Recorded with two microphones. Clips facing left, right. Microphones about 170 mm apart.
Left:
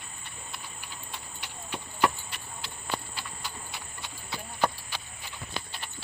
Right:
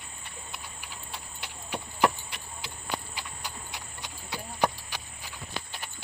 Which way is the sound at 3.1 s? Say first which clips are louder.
Even; 15° right (ahead or behind).